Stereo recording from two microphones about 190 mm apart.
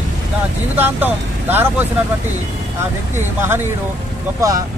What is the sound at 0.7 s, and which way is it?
Speech, 10° right (ahead or behind).